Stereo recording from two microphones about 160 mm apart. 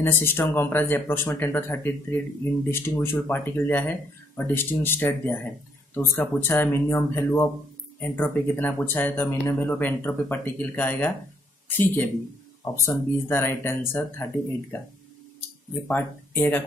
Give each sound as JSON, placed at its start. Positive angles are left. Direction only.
{"t": 0.2, "sound": "speech", "side_deg": 15}
{"t": 15.9, "sound": "speech", "side_deg": 10}